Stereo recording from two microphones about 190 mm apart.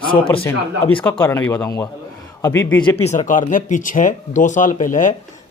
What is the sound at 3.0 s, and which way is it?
Speech, 40° left (ahead or behind).